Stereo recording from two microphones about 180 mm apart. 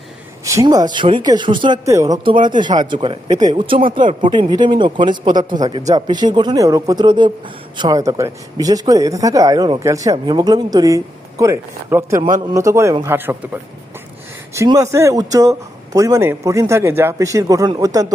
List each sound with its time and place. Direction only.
0.4 s speech: 20° right (ahead or behind)